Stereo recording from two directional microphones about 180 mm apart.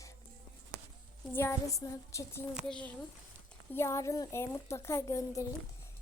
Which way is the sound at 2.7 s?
5° left (ahead or behind).